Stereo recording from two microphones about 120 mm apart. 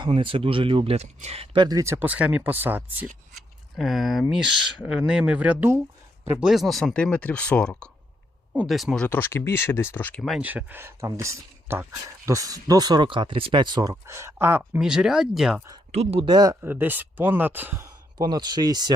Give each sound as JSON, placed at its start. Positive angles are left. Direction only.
{"t": 0.1, "sound": "speech", "side_deg": -45}
{"t": 1.6, "sound": "speech", "side_deg": -25}
{"t": 3.3, "sound": "speech", "side_deg": 0}
{"t": 6.4, "sound": "speech", "side_deg": 0}
{"t": 9.0, "sound": "speech", "side_deg": 15}
{"t": 10.4, "sound": "speech", "side_deg": -15}
{"t": 13.9, "sound": "speech", "side_deg": -20}
{"t": 14.8, "sound": "speech", "side_deg": -5}
{"t": 15.9, "sound": "speech", "side_deg": -60}
{"t": 16.2, "sound": "speech", "side_deg": -35}
{"t": 16.6, "sound": "speech", "side_deg": -15}
{"t": 18.2, "sound": "speech", "side_deg": -35}